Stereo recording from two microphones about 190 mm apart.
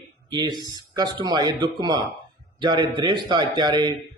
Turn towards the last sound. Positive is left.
turn(degrees=-20)  # may be behind; listen again after turning